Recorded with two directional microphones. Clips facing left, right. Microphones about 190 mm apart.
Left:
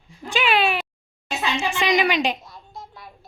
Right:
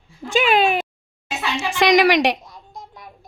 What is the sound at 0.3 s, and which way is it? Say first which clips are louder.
Cat: right 4 dB; 45° right (ahead or behind).